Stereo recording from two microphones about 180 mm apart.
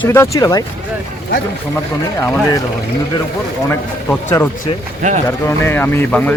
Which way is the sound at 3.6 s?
15° left (ahead or behind).